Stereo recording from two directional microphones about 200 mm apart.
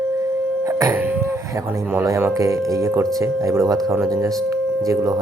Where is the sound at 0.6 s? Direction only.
15° right (ahead or behind).